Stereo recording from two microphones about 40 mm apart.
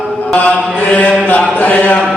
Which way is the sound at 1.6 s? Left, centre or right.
Left.